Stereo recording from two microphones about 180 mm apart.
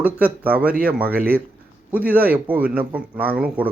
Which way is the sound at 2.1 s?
10° right (ahead or behind).